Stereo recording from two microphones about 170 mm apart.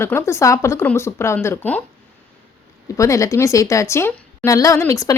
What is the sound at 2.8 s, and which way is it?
A woman's voice, 20° left (ahead or behind).